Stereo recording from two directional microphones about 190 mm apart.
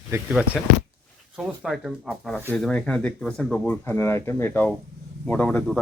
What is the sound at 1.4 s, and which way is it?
Speech, centre (ahead or behind).